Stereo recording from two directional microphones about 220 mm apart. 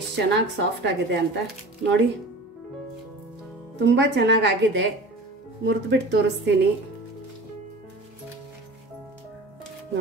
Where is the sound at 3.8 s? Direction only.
50° right (ahead or behind).